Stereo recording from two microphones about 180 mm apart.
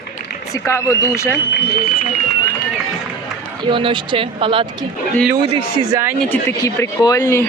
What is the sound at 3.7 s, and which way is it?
Speech, 25° right (ahead or behind).